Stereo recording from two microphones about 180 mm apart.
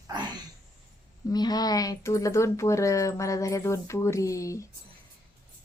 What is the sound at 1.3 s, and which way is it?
Speech, 20° left (ahead or behind).